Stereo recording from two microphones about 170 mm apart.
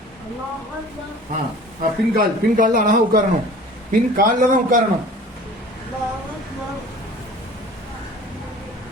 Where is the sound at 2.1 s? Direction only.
55° right (ahead or behind).